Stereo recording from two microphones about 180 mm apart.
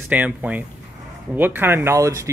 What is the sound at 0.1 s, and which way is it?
Speech, 10° right (ahead or behind).